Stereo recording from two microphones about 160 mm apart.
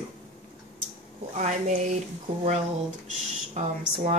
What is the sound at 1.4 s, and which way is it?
Speech, 45° right (ahead or behind).